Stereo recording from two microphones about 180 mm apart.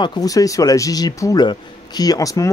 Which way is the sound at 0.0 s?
20° left (ahead or behind).